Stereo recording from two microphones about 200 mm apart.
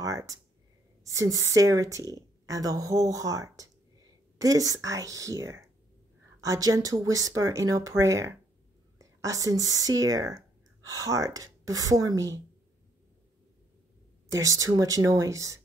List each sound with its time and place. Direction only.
0.0 s a woman's voice: 15° right (ahead or behind)
14.3 s a woman's voice: 15° right (ahead or behind)